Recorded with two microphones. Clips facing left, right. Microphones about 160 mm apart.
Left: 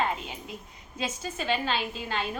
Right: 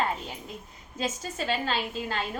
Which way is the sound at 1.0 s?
40° right (ahead or behind).